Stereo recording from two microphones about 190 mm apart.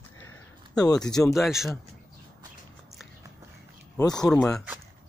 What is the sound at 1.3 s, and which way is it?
Speech, centre (ahead or behind).